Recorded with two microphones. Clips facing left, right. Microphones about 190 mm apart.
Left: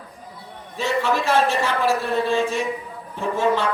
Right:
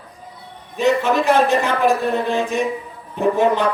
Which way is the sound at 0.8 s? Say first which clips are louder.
Right 5 dB; 20° right (ahead or behind).